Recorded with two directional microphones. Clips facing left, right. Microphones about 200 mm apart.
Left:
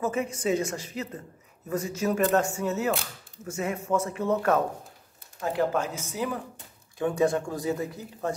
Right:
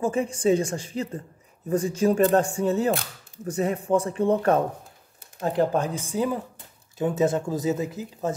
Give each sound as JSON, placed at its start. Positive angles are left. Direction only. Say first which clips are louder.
{"t": 0.0, "sound": "a woman's voice", "louder": "right 5 dB", "side_deg": -30}